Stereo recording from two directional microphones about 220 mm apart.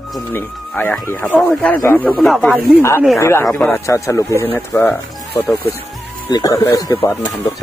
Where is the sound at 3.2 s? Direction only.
15° left (ahead or behind).